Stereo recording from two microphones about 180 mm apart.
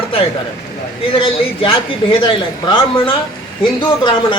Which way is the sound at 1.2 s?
30° left (ahead or behind).